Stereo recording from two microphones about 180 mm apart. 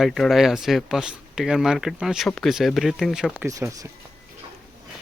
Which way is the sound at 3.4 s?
20° right (ahead or behind).